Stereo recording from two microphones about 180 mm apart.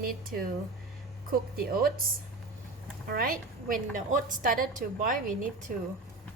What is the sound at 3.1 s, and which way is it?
A woman's voice, 55° right (ahead or behind).